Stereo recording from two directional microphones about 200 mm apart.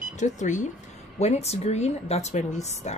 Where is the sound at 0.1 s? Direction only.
35° left (ahead or behind).